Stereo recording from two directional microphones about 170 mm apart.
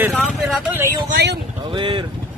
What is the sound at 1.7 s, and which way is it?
Vehicle, 30° right (ahead or behind).